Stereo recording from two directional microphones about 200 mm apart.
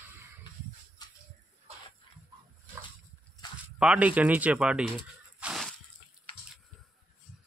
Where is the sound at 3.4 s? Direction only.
20° left (ahead or behind).